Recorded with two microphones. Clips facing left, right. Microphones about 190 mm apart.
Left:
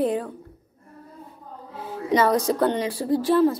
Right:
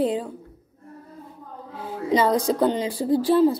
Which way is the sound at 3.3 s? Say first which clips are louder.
Right 1 dB; 30° right (ahead or behind).